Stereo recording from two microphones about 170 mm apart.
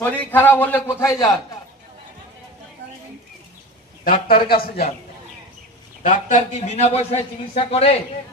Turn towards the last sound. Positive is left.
turn(degrees=35)  # may be behind; listen again after turning